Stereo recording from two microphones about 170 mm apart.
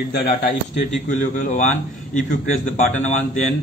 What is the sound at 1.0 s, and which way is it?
A man's voice, 45° left (ahead or behind).